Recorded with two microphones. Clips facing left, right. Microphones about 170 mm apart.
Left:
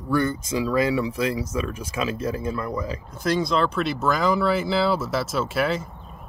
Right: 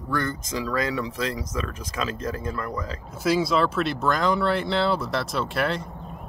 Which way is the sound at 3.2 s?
5° right (ahead or behind).